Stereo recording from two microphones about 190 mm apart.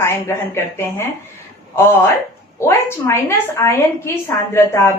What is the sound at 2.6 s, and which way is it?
A woman's voice, 15° left (ahead or behind).